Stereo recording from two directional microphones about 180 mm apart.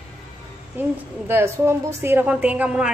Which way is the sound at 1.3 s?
15° right (ahead or behind).